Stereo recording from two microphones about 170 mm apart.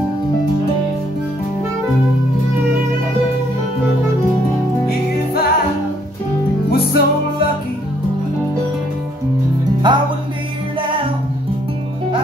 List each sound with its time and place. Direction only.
4.8 s music: 65° left (ahead or behind)
6.7 s music: 65° left (ahead or behind)
9.8 s music: 25° right (ahead or behind)